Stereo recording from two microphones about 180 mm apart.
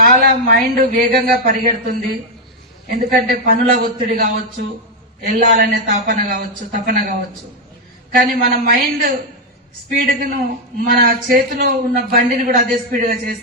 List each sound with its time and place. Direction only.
0.0 s a man's voice: 55° right (ahead or behind)
8.1 s speech: 55° right (ahead or behind)